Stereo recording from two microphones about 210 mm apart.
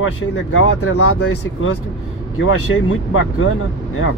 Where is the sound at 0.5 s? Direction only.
90° left.